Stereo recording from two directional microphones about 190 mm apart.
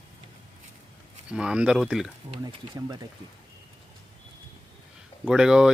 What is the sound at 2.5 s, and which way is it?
Speech, 20° right (ahead or behind).